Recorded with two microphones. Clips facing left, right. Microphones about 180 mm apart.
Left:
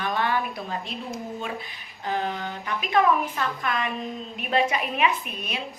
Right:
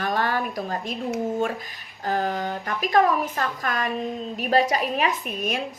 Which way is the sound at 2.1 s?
40° right (ahead or behind).